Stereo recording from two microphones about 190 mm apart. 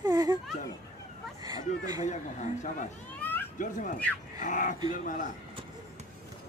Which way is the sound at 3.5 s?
45° left (ahead or behind).